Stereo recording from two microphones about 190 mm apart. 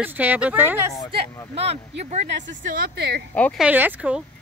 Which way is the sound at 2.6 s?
55° right (ahead or behind).